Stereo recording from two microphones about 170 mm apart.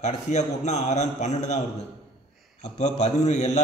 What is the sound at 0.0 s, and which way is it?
A man's voice, 40° left (ahead or behind).